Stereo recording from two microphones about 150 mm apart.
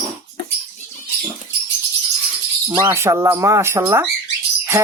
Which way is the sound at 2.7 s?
15° right (ahead or behind).